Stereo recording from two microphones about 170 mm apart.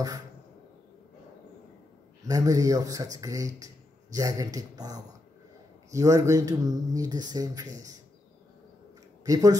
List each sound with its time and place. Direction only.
2.2 s speech: 20° right (ahead or behind)
9.2 s speech: 20° right (ahead or behind)